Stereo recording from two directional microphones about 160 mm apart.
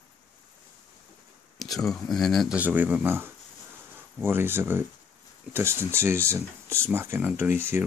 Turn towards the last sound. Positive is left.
turn(degrees=-15)  # may be behind; listen again after turning